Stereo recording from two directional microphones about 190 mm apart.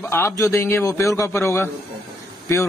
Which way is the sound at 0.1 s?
15° left (ahead or behind).